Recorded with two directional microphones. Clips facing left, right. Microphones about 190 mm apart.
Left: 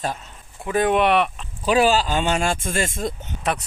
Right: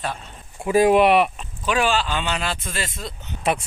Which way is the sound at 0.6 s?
5° right (ahead or behind).